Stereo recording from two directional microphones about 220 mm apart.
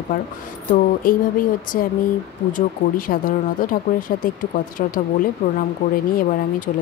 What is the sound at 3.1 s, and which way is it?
Speech, 40° left (ahead or behind).